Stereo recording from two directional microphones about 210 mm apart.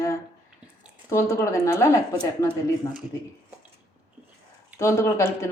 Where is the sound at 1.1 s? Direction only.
15° left (ahead or behind).